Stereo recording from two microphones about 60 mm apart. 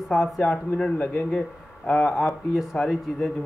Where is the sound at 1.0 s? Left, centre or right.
Centre.